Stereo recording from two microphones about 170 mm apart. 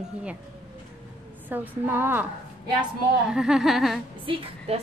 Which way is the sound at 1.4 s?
10° right (ahead or behind).